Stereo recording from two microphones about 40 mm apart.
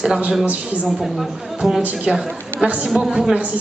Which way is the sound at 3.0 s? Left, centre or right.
Centre.